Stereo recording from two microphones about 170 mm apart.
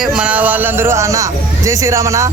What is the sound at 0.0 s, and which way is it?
A man's voice, 5° right (ahead or behind).